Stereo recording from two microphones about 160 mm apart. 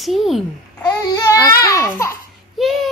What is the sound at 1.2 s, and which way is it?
Speech, 20° left (ahead or behind).